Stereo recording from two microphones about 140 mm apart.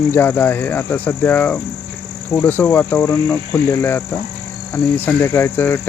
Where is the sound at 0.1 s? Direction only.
15° left (ahead or behind).